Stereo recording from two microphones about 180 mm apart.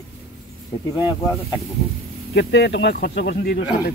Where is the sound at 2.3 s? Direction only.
65° left (ahead or behind).